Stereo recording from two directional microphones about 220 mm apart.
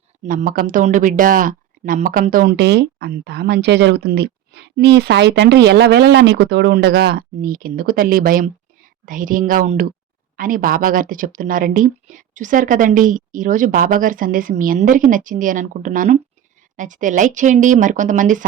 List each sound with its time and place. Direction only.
0.3 s speech: 40° right (ahead or behind)